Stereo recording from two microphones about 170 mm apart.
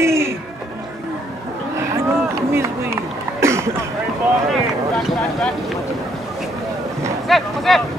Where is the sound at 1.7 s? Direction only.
15° right (ahead or behind).